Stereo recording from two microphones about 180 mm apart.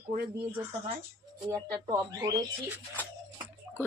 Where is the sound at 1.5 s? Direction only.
20° right (ahead or behind).